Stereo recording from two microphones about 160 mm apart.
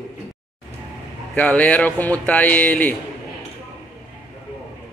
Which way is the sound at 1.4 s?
10° left (ahead or behind).